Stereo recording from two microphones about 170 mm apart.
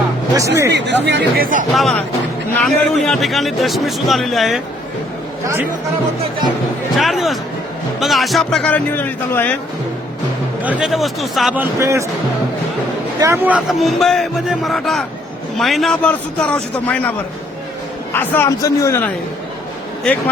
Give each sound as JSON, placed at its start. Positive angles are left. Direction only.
{"t": 0.3, "sound": "speech", "side_deg": -20}
{"t": 0.7, "sound": "speech", "side_deg": -90}
{"t": 1.7, "sound": "a man's voice", "side_deg": 0}
{"t": 7.0, "sound": "a man's voice", "side_deg": 0}
{"t": 10.6, "sound": "speech", "side_deg": -5}
{"t": 13.1, "sound": "a man's voice", "side_deg": -15}